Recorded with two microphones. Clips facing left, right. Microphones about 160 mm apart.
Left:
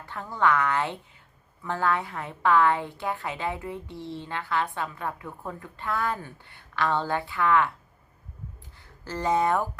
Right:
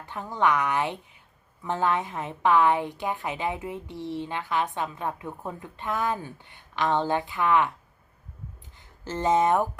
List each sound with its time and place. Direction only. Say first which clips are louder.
0.0 s a woman's voice: even; 15° right (ahead or behind)
8.8 s speech: right 2 dB; 20° right (ahead or behind)